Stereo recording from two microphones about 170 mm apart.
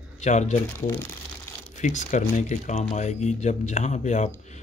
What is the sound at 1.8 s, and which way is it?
Speech, 45° left (ahead or behind).